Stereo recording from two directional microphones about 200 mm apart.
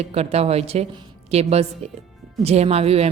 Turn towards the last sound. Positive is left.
turn(degrees=-30)  # may be behind; listen again after turning